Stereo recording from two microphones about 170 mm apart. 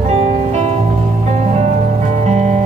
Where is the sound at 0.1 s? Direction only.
40° right (ahead or behind).